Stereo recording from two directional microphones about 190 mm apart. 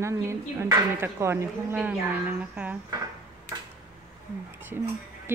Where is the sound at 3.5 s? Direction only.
15° right (ahead or behind).